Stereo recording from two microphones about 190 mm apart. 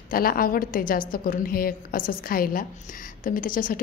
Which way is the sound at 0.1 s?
50° left (ahead or behind).